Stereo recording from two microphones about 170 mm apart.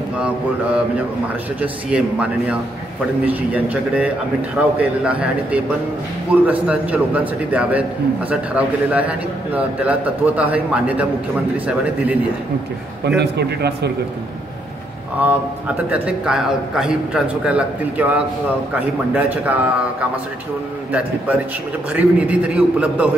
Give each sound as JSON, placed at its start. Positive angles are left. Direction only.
{"t": 0.2, "sound": "a man's voice", "side_deg": -5}
{"t": 13.0, "sound": "a man's voice", "side_deg": -80}
{"t": 15.9, "sound": "a man's voice", "side_deg": -5}
{"t": 21.9, "sound": "a man's voice", "side_deg": -5}